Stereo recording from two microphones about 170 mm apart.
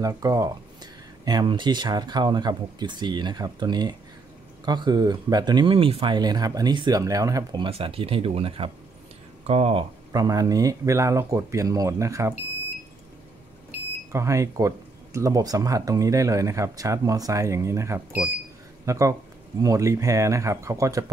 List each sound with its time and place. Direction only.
0.0 s speech: 20° right (ahead or behind); by 9.8 s 35° right (ahead or behind)
10.1 s speech: 20° right (ahead or behind)
14.1 s speech: 20° right (ahead or behind)